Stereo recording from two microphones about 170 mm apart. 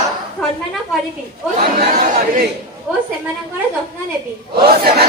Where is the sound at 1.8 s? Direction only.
50° right (ahead or behind).